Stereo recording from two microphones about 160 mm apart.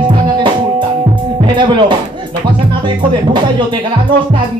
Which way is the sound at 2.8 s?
30° right (ahead or behind).